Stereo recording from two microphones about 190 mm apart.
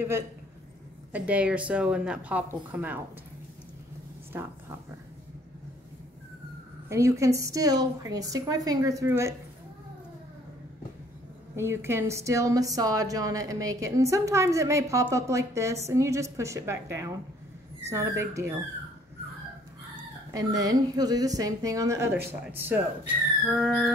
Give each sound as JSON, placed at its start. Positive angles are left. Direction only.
{"t": 1.1, "sound": "a woman's voice", "side_deg": -5}
{"t": 4.3, "sound": "speech", "side_deg": -10}
{"t": 6.9, "sound": "a woman's voice", "side_deg": -15}
{"t": 11.5, "sound": "a woman's voice", "side_deg": -15}
{"t": 20.3, "sound": "a woman's voice", "side_deg": -20}